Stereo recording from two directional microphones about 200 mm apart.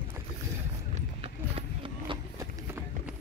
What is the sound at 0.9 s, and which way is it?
Run, 30° right (ahead or behind).